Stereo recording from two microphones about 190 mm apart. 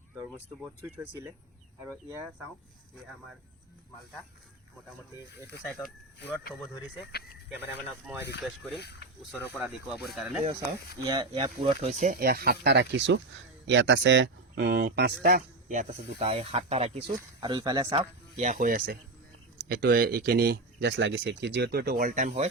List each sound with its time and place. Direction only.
0.3 s speech: 10° right (ahead or behind)
6.1 s speech: 65° left (ahead or behind)
7.7 s speech: 10° right (ahead or behind)
8.8 s speech: 60° left (ahead or behind)
9.3 s speech: 10° right (ahead or behind)
11.0 s speech: 20° right (ahead or behind); by 15.1 s 60° right (ahead or behind)
15.2 s a man's voice: 50° right (ahead or behind)
16.1 s speech: 30° right (ahead or behind)
17.4 s speech: 20° right (ahead or behind)
18.3 s speech: 40° right (ahead or behind)